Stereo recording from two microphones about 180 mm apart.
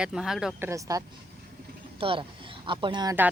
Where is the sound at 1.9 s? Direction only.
30° right (ahead or behind).